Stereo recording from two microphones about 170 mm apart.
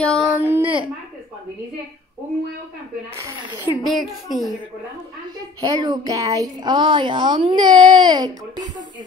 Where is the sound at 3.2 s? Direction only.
20° right (ahead or behind).